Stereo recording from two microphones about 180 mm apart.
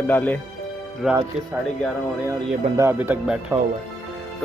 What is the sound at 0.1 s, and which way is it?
Speech, 10° left (ahead or behind).